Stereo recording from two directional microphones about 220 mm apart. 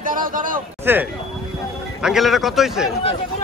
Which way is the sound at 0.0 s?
40° right (ahead or behind).